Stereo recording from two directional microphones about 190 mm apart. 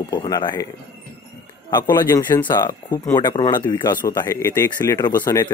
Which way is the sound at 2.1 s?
15° left (ahead or behind).